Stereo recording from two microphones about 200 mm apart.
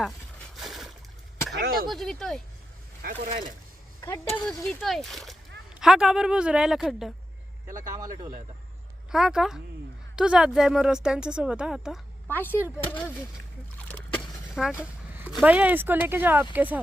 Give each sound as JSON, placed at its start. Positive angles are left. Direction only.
{"t": 0.5, "sound": "a sound", "side_deg": 0}
{"t": 1.5, "sound": "a sound", "side_deg": -50}
{"t": 1.9, "sound": "a woman's voice", "side_deg": 0}
{"t": 3.0, "sound": "speech", "side_deg": -40}
{"t": 4.0, "sound": "a woman's voice", "side_deg": 15}
{"t": 7.9, "sound": "speech", "side_deg": -20}
{"t": 9.1, "sound": "a woman's voice", "side_deg": -5}
{"t": 12.3, "sound": "speech", "side_deg": 10}
{"t": 12.5, "sound": "speech", "side_deg": -10}
{"t": 12.8, "sound": "speech", "side_deg": 10}
{"t": 13.7, "sound": "splash", "side_deg": 5}
{"t": 14.5, "sound": "speech", "side_deg": -5}